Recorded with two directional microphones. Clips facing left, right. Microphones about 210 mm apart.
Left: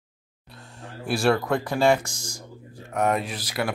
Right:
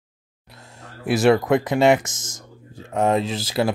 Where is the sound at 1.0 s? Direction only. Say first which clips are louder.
Right 5 dB; 20° right (ahead or behind).